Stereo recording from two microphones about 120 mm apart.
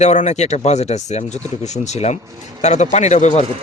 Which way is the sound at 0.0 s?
75° left (ahead or behind).